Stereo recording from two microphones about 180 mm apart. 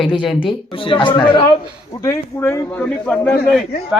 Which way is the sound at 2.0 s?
15° left (ahead or behind).